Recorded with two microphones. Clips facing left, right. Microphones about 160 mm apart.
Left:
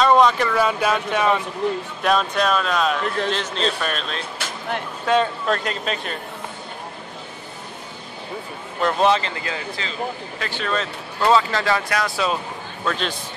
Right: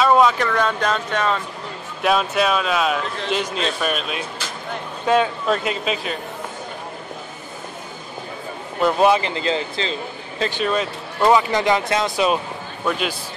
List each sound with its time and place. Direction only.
0.0 s speech: 5° right (ahead or behind)
2.0 s speech: 5° right (ahead or behind)
8.8 s speech: 10° right (ahead or behind)
9.3 s speech: 25° right (ahead or behind)
12.8 s speech: 10° right (ahead or behind)